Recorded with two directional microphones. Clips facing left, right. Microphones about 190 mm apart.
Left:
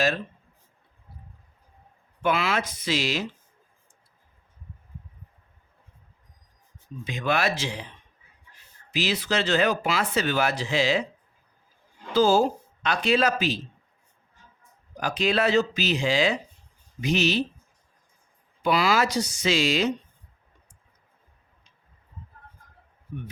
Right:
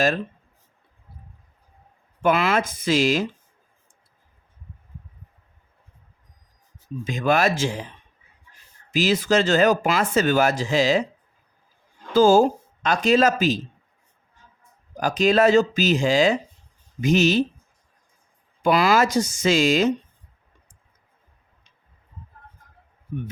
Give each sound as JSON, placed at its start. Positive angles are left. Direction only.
{"t": 2.2, "sound": "speech", "side_deg": -50}
{"t": 7.0, "sound": "speech", "side_deg": -45}
{"t": 8.9, "sound": "speech", "side_deg": -45}
{"t": 12.1, "sound": "speech", "side_deg": -45}
{"t": 14.9, "sound": "speech", "side_deg": -45}
{"t": 18.6, "sound": "speech", "side_deg": -50}